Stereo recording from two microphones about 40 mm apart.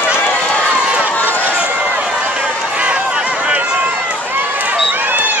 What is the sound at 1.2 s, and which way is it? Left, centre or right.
Run, left.